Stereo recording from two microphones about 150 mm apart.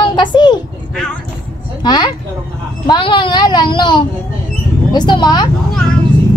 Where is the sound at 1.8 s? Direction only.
30° left (ahead or behind).